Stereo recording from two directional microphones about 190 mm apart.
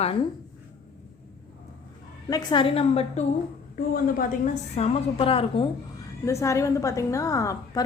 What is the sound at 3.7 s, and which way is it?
Speech, 50° left (ahead or behind).